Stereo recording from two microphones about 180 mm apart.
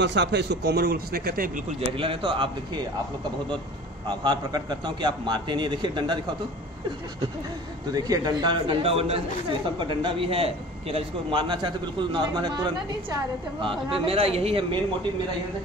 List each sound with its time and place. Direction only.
0.0 s speech: 75° right (ahead or behind); by 1.5 s 55° right (ahead or behind)
1.9 s speech: 30° right (ahead or behind)
4.2 s speech: 25° right (ahead or behind)
7.9 s a man's voice: 20° right (ahead or behind)